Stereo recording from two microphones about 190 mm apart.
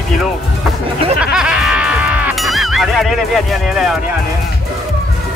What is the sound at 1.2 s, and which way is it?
Music, 5° right (ahead or behind).